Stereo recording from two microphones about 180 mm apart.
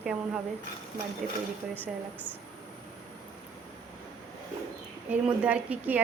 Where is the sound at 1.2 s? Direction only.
45° right (ahead or behind).